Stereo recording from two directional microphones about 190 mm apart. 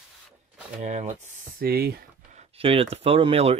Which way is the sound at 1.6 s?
55° right (ahead or behind).